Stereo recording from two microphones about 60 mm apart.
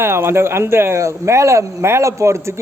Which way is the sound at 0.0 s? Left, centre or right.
Right.